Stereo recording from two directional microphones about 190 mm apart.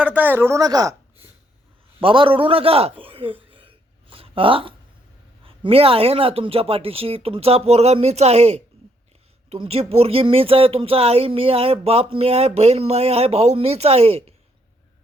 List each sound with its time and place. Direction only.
0.0 s speech: 10° right (ahead or behind)
2.0 s a man's voice: 25° right (ahead or behind)
4.1 s a sound: 30° right (ahead or behind)
5.5 s speech: 30° right (ahead or behind)